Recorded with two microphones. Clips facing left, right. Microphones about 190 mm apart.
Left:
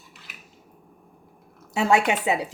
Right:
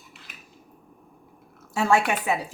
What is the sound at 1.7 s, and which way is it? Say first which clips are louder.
Speech: left 1 dB; 20° left (ahead or behind).